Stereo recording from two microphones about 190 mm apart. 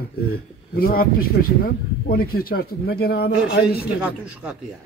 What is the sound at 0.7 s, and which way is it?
Speech, 50° left (ahead or behind).